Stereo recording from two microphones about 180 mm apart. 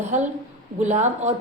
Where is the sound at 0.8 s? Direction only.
40° right (ahead or behind).